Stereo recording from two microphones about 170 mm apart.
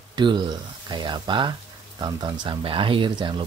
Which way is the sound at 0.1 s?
25° right (ahead or behind).